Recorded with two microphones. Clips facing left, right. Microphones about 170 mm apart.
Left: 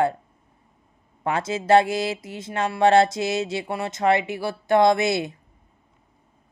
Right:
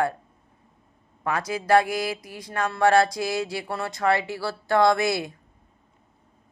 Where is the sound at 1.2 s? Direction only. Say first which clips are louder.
Left 3 dB; 25° left (ahead or behind).